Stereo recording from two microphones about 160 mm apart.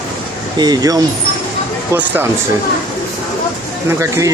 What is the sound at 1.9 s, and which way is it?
Speech, 10° right (ahead or behind).